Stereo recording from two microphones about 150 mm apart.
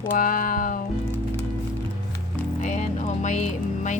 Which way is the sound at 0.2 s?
65° left (ahead or behind).